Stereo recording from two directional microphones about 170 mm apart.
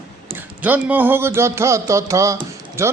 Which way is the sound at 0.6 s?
10° right (ahead or behind).